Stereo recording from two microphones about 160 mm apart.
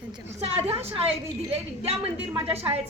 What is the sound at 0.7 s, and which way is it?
Speech, 40° right (ahead or behind).